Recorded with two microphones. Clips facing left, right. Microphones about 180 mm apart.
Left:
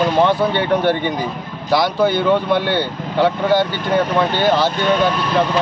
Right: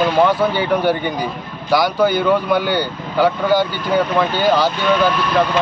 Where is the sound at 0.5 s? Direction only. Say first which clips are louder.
Even; centre (ahead or behind).